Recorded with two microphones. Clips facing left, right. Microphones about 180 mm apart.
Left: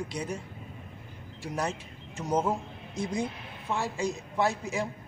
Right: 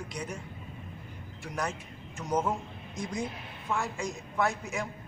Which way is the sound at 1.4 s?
30° left (ahead or behind).